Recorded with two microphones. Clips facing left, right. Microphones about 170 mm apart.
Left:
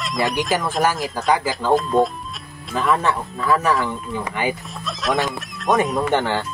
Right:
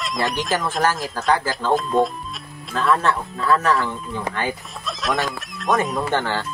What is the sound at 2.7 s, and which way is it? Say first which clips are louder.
Speech: even; 15° left (ahead or behind).